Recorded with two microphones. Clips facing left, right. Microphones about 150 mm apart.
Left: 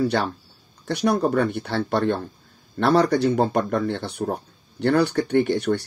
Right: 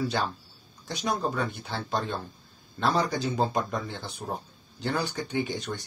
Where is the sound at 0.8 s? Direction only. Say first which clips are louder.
Left 8 dB; 65° left (ahead or behind).